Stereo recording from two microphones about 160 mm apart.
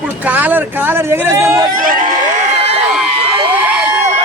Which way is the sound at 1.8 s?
60° right (ahead or behind).